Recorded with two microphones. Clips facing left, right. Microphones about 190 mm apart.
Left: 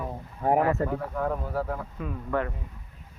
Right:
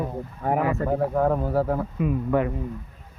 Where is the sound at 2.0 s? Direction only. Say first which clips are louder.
Right 6 dB; 15° right (ahead or behind).